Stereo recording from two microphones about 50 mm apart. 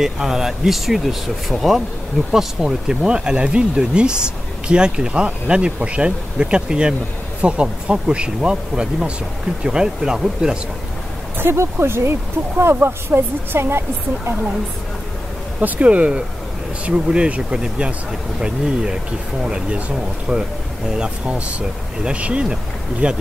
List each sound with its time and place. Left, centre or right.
0.0 s speech: centre
11.3 s speech: right
15.6 s speech: right
20.9 s speech: right